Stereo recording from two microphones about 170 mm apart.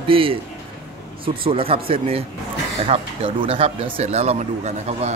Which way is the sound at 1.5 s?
35° right (ahead or behind).